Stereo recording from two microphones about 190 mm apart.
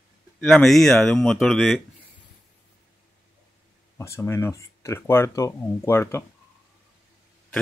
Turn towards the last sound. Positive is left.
turn(degrees=15)  # may be behind; listen again after turning